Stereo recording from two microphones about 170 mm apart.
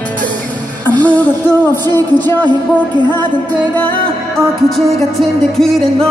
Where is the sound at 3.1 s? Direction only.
25° right (ahead or behind).